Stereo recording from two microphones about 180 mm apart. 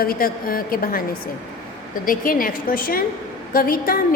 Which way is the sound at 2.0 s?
50° left (ahead or behind).